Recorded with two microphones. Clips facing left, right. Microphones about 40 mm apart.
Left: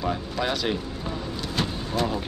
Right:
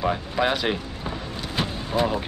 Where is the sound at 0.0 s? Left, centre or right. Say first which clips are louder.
Right 4 dB; right.